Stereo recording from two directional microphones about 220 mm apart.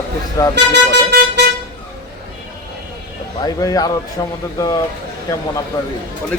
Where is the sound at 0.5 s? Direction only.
50° right (ahead or behind).